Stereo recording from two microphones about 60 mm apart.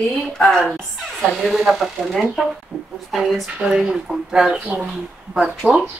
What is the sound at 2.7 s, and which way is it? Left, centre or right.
Speech, right.